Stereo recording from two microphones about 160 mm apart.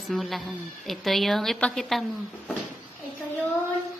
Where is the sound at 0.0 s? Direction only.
Centre (ahead or behind).